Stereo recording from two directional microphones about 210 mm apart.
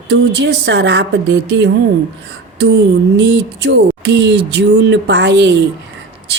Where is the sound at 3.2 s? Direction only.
55° right (ahead or behind).